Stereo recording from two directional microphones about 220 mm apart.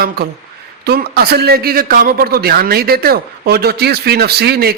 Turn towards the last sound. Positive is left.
turn(degrees=-45)  # may be behind; listen again after turning